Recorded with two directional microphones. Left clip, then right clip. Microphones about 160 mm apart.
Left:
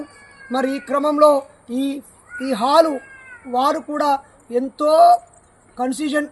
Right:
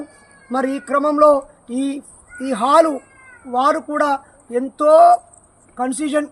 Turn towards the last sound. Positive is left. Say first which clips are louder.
# right 1 dB
turn(degrees=15)  # may be behind; listen again after turning